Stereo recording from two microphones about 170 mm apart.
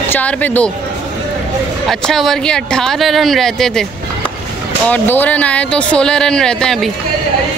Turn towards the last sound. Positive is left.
turn(degrees=5)  # may be behind; listen again after turning